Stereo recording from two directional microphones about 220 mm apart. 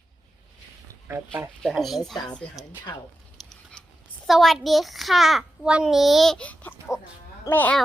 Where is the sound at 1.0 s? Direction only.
10° right (ahead or behind).